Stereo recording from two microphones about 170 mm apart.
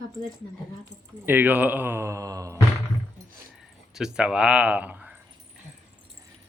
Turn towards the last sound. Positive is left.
turn(degrees=-10)  # may be behind; listen again after turning